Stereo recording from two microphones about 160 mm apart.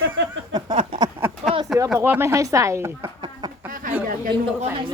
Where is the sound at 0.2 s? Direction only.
90° right.